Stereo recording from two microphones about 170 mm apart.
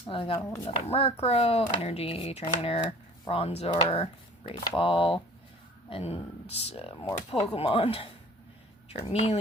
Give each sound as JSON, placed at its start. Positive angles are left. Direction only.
{"t": 0.0, "sound": "speech", "side_deg": 30}
{"t": 0.4, "sound": "speech", "side_deg": 15}
{"t": 0.7, "sound": "speech", "side_deg": 35}